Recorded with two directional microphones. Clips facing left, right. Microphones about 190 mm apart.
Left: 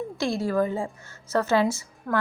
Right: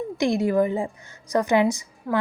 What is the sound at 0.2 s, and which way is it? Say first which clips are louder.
A woman's voice: right 4 dB; 20° right (ahead or behind).